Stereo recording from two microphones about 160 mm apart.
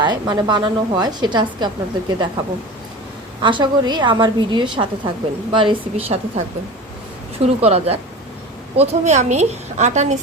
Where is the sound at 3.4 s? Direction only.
30° right (ahead or behind).